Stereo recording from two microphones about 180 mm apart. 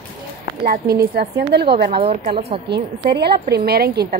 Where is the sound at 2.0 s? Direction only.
35° right (ahead or behind).